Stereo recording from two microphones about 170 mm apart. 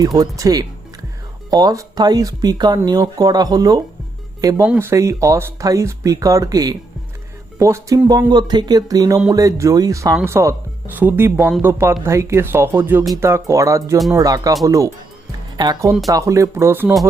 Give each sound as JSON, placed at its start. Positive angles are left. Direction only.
{"t": 0.0, "sound": "speech", "side_deg": -20}
{"t": 4.6, "sound": "speech", "side_deg": -10}